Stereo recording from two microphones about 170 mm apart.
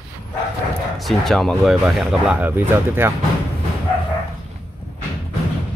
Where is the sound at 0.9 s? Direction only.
Centre (ahead or behind).